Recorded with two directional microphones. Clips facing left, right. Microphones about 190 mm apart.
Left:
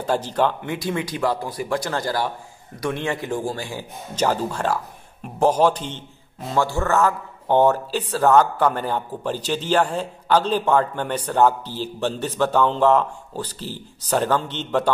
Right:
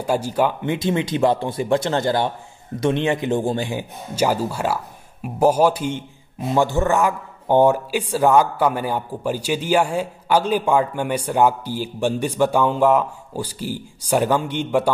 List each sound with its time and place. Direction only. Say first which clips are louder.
0.0 s a man's voice: right 1 dB; 10° right (ahead or behind)
0.7 s a man's voice: right 5 dB; 20° right (ahead or behind)
4.1 s a man's voice: right 2 dB; 10° right (ahead or behind)